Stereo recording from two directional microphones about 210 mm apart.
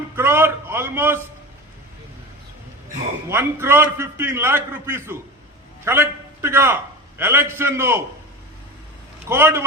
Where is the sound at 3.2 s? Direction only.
10° right (ahead or behind).